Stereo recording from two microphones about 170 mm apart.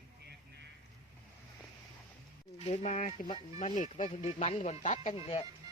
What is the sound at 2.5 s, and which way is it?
Speech, 40° left (ahead or behind).